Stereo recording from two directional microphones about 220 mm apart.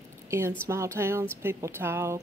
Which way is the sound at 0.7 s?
10° right (ahead or behind).